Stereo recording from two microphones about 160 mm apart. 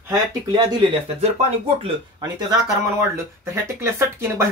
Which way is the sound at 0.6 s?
30° right (ahead or behind).